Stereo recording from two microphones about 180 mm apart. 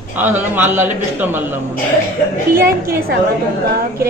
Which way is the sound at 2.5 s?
55° right (ahead or behind).